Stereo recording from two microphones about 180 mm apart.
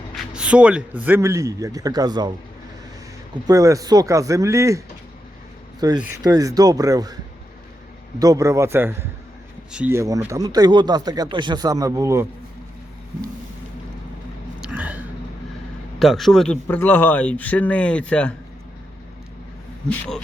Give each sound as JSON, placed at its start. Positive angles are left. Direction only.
{"t": 0.3, "sound": "a man's voice", "side_deg": -5}
{"t": 3.4, "sound": "speech", "side_deg": -20}
{"t": 5.8, "sound": "speech", "side_deg": -20}
{"t": 8.2, "sound": "a man's voice", "side_deg": -20}
{"t": 14.6, "sound": "a sound", "side_deg": -10}
{"t": 16.0, "sound": "speech", "side_deg": 0}